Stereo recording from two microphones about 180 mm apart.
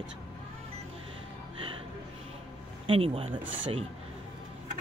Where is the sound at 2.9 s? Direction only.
30° right (ahead or behind).